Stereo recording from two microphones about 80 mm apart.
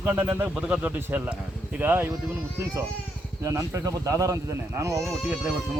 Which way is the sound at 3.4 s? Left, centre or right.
Right.